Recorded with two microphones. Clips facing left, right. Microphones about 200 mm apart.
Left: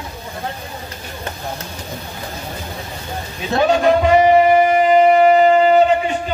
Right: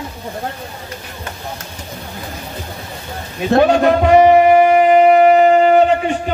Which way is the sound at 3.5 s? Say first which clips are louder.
Right 3 dB; 60° right (ahead or behind).